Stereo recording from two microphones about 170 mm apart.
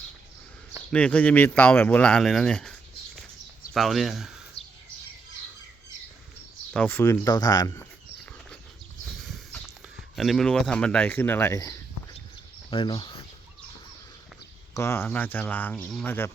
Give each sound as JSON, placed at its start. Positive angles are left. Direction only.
{"t": 0.9, "sound": "speech", "side_deg": 5}
{"t": 3.8, "sound": "speech", "side_deg": 0}
{"t": 4.6, "sound": "bird", "side_deg": 35}
{"t": 6.7, "sound": "speech", "side_deg": 10}
{"t": 9.2, "sound": "horse", "side_deg": 0}
{"t": 10.2, "sound": "speech", "side_deg": 0}
{"t": 12.7, "sound": "speech", "side_deg": 30}
{"t": 14.7, "sound": "speech", "side_deg": 15}
{"t": 16.0, "sound": "speech", "side_deg": 15}